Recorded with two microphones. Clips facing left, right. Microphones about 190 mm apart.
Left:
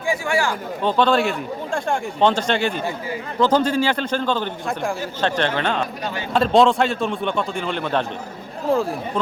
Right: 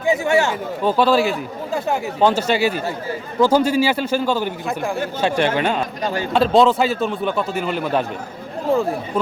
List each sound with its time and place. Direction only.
0.0 s speech: 25° right (ahead or behind)
0.8 s a man's voice: 5° right (ahead or behind)